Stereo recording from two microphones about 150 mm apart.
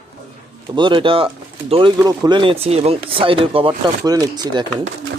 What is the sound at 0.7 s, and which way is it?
Speech, 30° right (ahead or behind).